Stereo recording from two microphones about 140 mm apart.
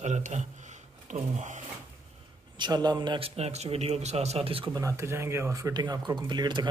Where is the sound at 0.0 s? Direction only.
55° right (ahead or behind).